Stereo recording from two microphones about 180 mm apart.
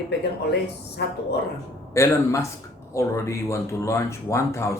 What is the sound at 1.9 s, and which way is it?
Speech, 15° left (ahead or behind).